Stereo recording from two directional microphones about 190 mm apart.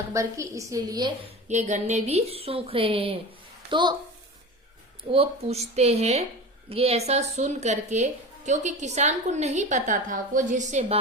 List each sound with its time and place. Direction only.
0.1 s a woman's voice: 15° right (ahead or behind)
1.5 s a woman's voice: 40° right (ahead or behind)
5.1 s a woman's voice: 30° right (ahead or behind)